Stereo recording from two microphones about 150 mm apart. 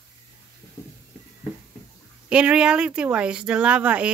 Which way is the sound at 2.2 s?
5° right (ahead or behind).